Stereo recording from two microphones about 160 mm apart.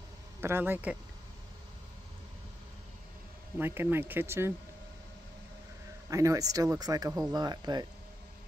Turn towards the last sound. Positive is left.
turn(degrees=-25)  # may be behind; listen again after turning